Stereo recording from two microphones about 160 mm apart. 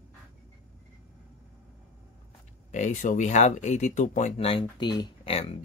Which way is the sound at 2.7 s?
50° left (ahead or behind).